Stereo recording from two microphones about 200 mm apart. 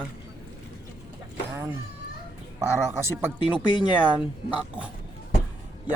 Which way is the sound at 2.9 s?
10° right (ahead or behind).